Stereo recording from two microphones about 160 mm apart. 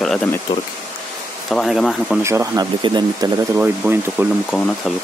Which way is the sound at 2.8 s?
30° right (ahead or behind).